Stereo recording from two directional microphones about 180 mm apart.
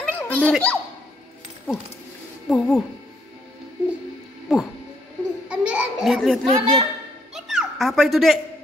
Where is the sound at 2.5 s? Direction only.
Centre (ahead or behind).